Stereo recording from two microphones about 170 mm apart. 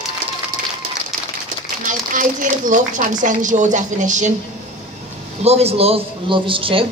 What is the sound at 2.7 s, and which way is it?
Speech, 50° right (ahead or behind).